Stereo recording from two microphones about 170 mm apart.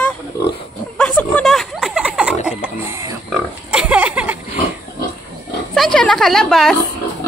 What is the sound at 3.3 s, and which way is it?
Pig, 5° right (ahead or behind).